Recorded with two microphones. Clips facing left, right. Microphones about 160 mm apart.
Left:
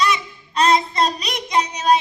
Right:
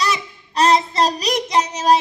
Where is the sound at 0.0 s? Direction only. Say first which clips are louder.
Left 2 dB; 40° right (ahead or behind).